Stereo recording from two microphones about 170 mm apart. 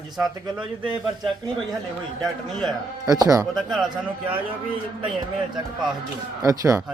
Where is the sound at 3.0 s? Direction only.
20° right (ahead or behind).